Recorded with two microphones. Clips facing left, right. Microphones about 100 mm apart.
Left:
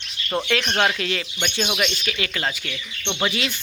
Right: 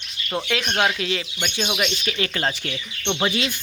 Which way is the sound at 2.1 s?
30° right (ahead or behind).